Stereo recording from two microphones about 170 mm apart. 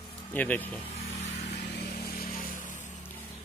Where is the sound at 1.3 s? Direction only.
70° left (ahead or behind).